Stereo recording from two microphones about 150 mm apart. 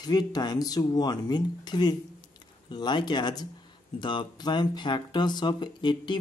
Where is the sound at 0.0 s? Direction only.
30° left (ahead or behind).